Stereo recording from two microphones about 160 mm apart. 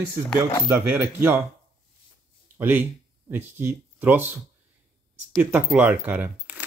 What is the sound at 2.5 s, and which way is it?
Speech, 10° right (ahead or behind).